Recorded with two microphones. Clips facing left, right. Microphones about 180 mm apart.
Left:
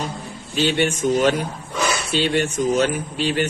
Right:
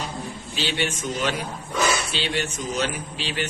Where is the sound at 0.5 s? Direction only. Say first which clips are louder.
Left 8 dB; 50° left (ahead or behind).